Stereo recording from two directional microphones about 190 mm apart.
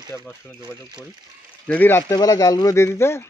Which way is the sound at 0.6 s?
20° right (ahead or behind).